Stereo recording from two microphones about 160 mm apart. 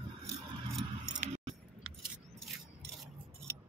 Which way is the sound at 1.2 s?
45° right (ahead or behind).